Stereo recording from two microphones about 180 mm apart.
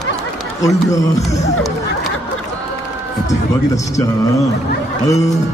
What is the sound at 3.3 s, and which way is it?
Speech, 20° left (ahead or behind).